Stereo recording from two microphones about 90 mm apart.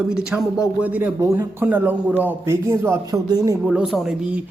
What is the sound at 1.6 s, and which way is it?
Speech, 20° right (ahead or behind).